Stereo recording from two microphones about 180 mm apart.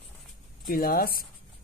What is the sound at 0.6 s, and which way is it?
Speech, 55° left (ahead or behind).